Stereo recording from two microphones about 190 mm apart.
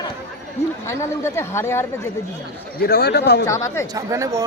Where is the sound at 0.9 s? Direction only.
15° left (ahead or behind).